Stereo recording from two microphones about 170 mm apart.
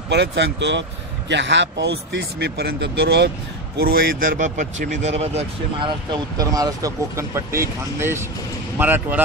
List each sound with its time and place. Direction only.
0.1 s speech: 90° right
3.7 s a man's voice: 60° right (ahead or behind); by 5.4 s 40° right (ahead or behind)
6.1 s speech: 20° right (ahead or behind)